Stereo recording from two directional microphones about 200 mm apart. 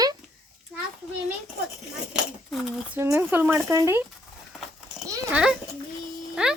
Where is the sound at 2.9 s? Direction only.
15° right (ahead or behind).